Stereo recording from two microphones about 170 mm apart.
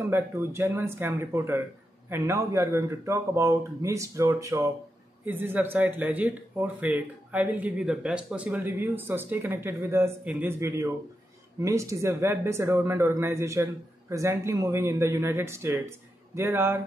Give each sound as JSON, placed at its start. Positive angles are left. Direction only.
{"t": 0.1, "sound": "speech", "side_deg": -15}